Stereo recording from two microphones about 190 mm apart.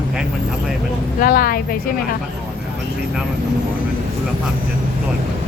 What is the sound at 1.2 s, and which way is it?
Speech, 50° left (ahead or behind).